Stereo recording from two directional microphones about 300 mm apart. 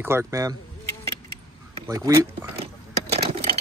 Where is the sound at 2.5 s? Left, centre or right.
Centre.